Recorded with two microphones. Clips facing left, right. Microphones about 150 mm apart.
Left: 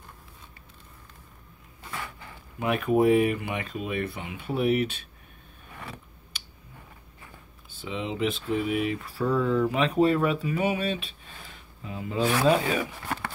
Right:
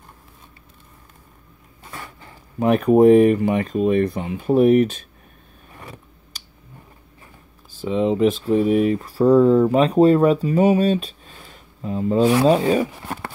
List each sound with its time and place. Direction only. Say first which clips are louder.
1.9 s speech: even; 35° right (ahead or behind)
7.7 s speech: right 13 dB; 40° right (ahead or behind)